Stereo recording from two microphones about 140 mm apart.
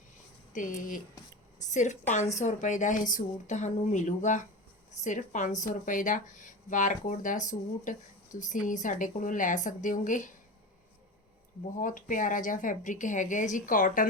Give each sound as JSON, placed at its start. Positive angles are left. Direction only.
{"t": 0.5, "sound": "speech", "side_deg": 70}
{"t": 1.5, "sound": "speech", "side_deg": 60}
{"t": 11.8, "sound": "speech", "side_deg": 70}